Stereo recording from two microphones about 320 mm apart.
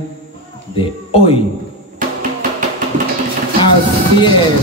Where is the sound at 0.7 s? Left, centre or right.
Centre.